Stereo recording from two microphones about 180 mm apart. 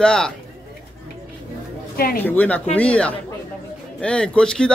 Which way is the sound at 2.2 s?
10° left (ahead or behind).